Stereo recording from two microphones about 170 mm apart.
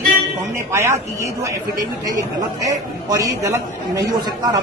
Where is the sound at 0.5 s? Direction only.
15° right (ahead or behind).